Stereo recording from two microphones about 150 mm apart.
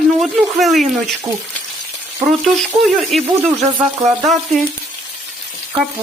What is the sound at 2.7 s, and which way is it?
Speech, centre (ahead or behind).